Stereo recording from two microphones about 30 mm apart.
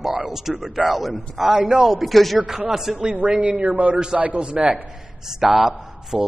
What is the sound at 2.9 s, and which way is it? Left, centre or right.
Speech, right.